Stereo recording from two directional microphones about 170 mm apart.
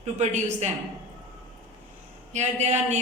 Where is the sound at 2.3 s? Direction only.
40° right (ahead or behind).